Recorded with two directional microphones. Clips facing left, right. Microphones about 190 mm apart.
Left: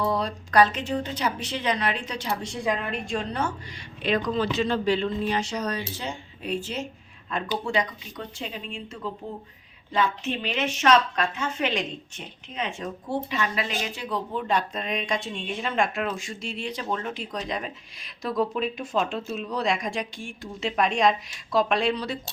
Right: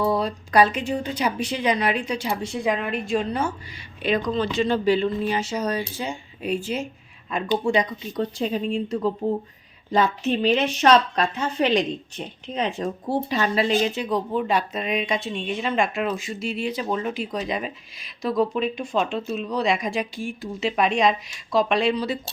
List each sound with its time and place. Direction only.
0.0 s a woman's voice: 5° right (ahead or behind)
8.1 s a woman's voice: 35° right (ahead or behind)
14.0 s speech: 10° right (ahead or behind)